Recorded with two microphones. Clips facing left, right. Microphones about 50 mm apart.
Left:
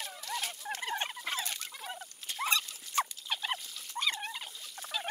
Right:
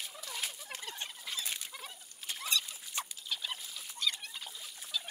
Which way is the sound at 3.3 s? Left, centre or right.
Left.